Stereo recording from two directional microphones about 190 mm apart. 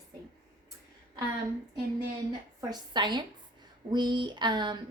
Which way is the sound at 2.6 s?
20° right (ahead or behind).